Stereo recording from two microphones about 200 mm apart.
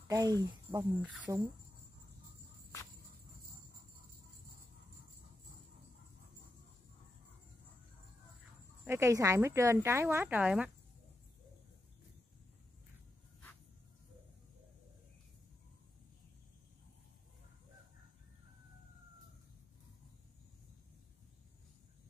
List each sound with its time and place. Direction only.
0.1 s speech: 15° right (ahead or behind)
8.8 s speech: 15° right (ahead or behind)